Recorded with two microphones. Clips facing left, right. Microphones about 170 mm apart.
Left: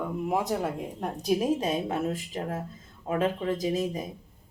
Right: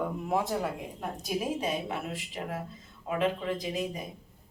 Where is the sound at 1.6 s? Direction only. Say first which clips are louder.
Left 4 dB; 45° left (ahead or behind).